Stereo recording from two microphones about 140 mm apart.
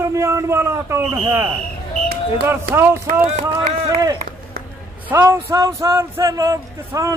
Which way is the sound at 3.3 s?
50° right (ahead or behind).